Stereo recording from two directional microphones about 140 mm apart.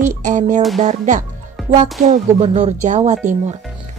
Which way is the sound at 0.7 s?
60° right (ahead or behind).